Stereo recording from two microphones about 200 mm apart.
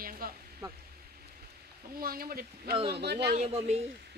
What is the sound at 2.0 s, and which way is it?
A woman's voice, 50° right (ahead or behind).